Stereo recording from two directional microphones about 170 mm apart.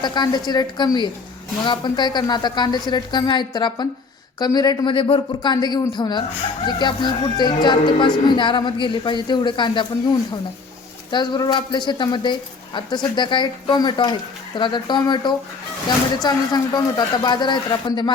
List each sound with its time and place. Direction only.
0.0 s speech: 25° left (ahead or behind)
11.1 s speech: 25° left (ahead or behind)